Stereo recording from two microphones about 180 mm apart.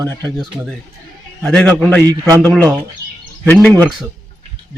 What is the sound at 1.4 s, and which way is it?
Speech, 5° left (ahead or behind).